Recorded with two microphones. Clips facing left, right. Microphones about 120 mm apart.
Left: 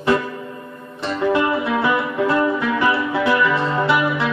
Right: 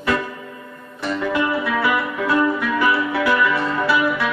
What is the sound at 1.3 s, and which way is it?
Music, 25° left (ahead or behind).